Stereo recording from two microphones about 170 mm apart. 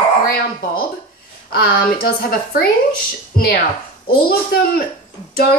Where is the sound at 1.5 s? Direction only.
65° left (ahead or behind).